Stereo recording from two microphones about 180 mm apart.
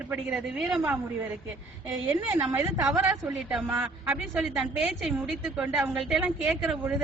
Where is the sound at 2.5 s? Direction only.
20° right (ahead or behind).